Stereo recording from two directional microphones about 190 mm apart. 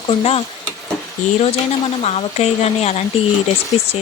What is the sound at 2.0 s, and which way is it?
Speech, 35° left (ahead or behind).